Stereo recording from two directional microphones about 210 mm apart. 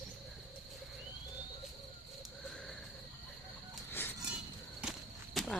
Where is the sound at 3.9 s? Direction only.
10° left (ahead or behind).